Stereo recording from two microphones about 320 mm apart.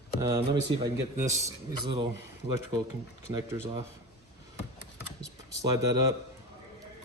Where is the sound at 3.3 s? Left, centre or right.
Centre.